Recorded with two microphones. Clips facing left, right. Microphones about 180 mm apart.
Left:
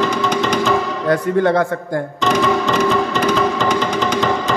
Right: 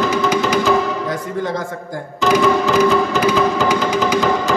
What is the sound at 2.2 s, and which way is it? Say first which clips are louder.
Music: right 3 dB; 5° right (ahead or behind).